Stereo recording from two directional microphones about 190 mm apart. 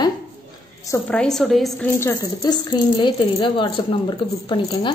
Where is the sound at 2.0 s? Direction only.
15° left (ahead or behind).